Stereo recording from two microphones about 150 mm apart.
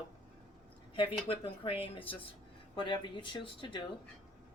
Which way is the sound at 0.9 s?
35° left (ahead or behind).